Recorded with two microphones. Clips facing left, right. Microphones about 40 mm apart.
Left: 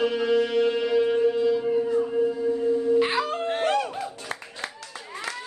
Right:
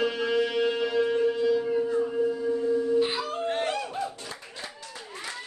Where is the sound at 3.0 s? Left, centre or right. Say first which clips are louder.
Left 3 dB; left.